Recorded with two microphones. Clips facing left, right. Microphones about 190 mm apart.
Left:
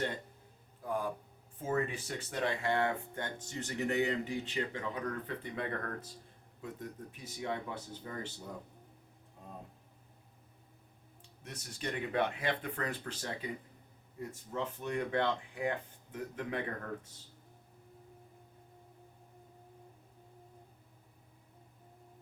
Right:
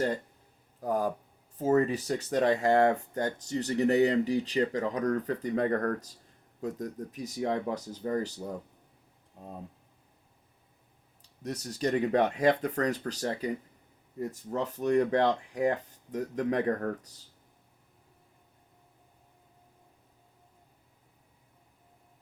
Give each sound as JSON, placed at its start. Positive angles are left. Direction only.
{"t": 0.8, "sound": "speech", "side_deg": -40}
{"t": 11.4, "sound": "speech", "side_deg": -40}